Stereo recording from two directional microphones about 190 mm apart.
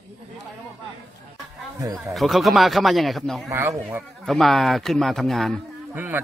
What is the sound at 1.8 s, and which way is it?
Speech, 15° right (ahead or behind).